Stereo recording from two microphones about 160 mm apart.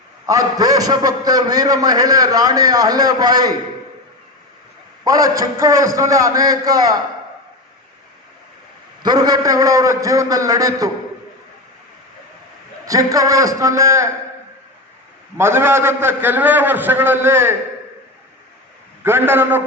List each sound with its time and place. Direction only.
0.3 s a man's voice: 20° right (ahead or behind)
5.0 s a man's voice: 25° right (ahead or behind)
9.0 s a man's voice: 25° right (ahead or behind)
12.8 s a man's voice: 20° right (ahead or behind)
15.4 s a man's voice: 15° right (ahead or behind)
19.0 s a man's voice: 15° right (ahead or behind)